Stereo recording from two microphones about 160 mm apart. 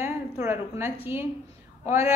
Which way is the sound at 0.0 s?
15° right (ahead or behind).